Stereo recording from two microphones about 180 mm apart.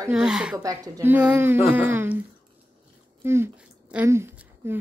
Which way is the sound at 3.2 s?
15° right (ahead or behind).